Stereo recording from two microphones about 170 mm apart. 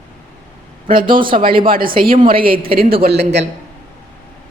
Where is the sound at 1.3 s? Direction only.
45° right (ahead or behind); by 3.0 s 60° right (ahead or behind).